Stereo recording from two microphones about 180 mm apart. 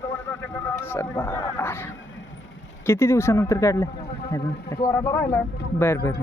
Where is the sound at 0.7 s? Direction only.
15° left (ahead or behind).